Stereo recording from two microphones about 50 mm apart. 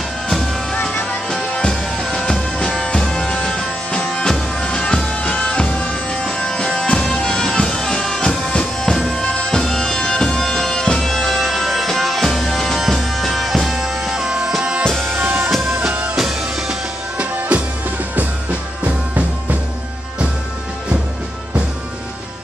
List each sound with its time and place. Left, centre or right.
1.6 s music: centre
4.0 s music: left
8.9 s music: centre
9.2 s bagpipes: left
11.0 s music: centre
14.9 s music: centre
17.2 s music: right